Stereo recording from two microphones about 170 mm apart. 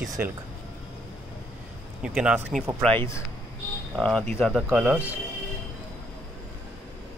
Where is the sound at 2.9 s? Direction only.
15° left (ahead or behind).